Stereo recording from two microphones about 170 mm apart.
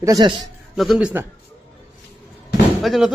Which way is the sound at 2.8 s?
Centre (ahead or behind).